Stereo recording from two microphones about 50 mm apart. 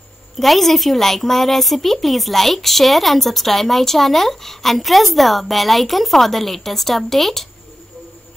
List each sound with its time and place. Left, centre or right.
0.4 s a woman's voice: centre